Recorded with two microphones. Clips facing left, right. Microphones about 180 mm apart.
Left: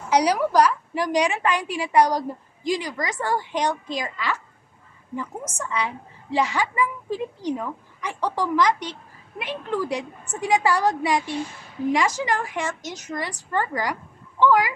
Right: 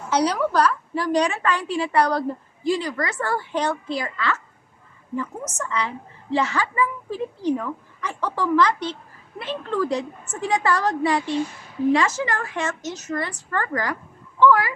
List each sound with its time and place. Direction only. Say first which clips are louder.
0.1 s a woman's voice: left 1 dB; 10° left (ahead or behind)